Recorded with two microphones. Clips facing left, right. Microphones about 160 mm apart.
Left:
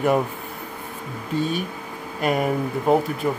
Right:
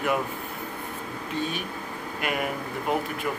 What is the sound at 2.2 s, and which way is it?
Speech, 35° left (ahead or behind).